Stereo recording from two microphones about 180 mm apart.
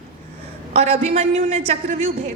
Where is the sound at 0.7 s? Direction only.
35° right (ahead or behind).